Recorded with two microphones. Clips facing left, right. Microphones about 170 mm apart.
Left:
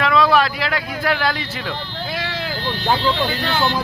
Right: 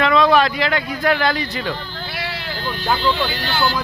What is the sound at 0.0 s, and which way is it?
Speech, centre (ahead or behind).